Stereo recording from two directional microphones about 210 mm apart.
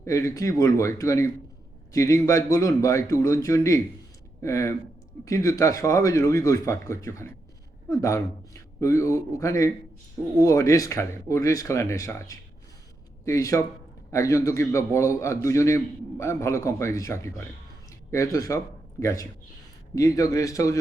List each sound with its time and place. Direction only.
0.0 s a man's voice: 15° left (ahead or behind)